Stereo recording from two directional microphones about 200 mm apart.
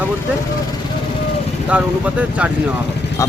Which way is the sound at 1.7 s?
5° right (ahead or behind).